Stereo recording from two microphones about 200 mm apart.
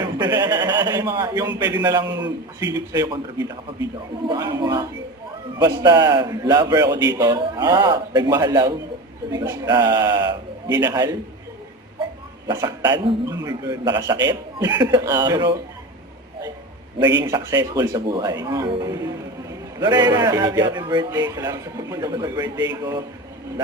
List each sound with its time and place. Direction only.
0.0 s a sound: 20° right (ahead or behind)
1.5 s a man's voice: 20° right (ahead or behind)
12.5 s a man's voice: 20° right (ahead or behind)
17.2 s a man's voice: 15° right (ahead or behind)